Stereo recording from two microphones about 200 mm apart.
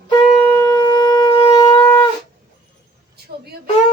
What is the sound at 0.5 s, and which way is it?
Shofar, 15° left (ahead or behind).